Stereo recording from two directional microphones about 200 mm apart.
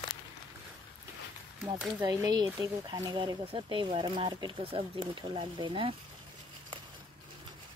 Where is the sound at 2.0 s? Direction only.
20° right (ahead or behind).